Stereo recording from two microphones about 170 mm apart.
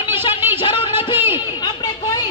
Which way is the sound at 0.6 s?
30° left (ahead or behind).